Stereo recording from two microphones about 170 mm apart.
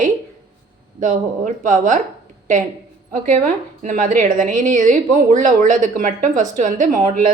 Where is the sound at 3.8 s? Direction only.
50° right (ahead or behind).